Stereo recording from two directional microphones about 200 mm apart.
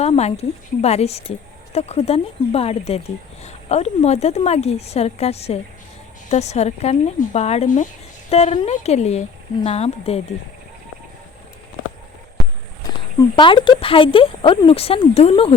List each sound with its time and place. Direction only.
0.0 s a woman's voice: 30° left (ahead or behind)
13.3 s speech: 25° left (ahead or behind)